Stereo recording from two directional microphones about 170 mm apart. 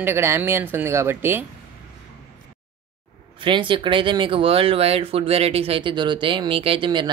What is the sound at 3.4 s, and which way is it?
Speech, 30° right (ahead or behind).